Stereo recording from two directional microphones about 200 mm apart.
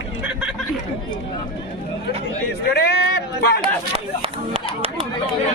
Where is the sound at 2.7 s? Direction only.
55° left (ahead or behind).